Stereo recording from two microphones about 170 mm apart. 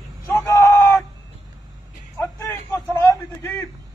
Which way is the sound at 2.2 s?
15° left (ahead or behind).